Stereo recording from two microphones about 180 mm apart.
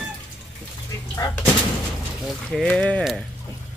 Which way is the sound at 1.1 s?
20° left (ahead or behind).